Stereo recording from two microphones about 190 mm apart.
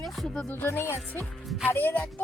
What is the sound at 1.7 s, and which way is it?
Speech, 10° left (ahead or behind).